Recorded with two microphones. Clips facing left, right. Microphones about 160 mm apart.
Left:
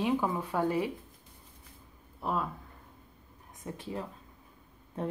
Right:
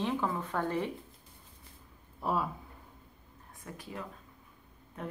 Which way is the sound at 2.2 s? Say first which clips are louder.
Right 1 dB; 5° right (ahead or behind).